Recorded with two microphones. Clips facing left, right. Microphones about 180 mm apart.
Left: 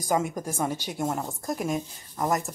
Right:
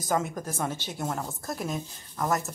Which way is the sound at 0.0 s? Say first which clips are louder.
Left 2 dB; 10° left (ahead or behind).